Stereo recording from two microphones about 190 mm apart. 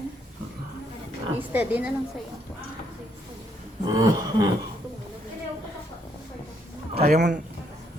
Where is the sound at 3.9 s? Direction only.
20° right (ahead or behind).